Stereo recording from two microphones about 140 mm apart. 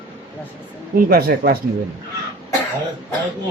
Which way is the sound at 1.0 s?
90° right.